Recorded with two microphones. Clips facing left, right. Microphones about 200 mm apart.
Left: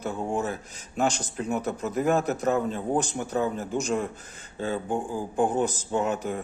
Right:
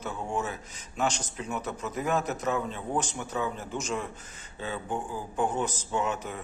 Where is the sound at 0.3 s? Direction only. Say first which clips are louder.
Left 4 dB; 45° left (ahead or behind).